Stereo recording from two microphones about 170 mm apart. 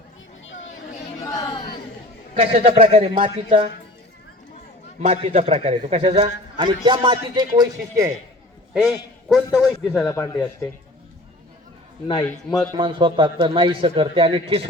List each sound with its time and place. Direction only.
1.2 s a sound: 20° left (ahead or behind)
2.3 s a man's voice: 40° right (ahead or behind)
4.9 s a man's voice: 40° right (ahead or behind); by 8.1 s 20° right (ahead or behind)
8.7 s a man's voice: 5° right (ahead or behind)
10.1 s speech: 15° left (ahead or behind)
12.7 s a man's voice: 25° right (ahead or behind)